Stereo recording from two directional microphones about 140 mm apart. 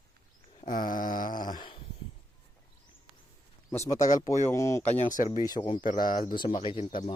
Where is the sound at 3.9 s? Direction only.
60° left (ahead or behind).